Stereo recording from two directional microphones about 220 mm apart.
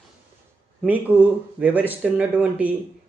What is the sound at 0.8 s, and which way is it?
Speech, 5° right (ahead or behind).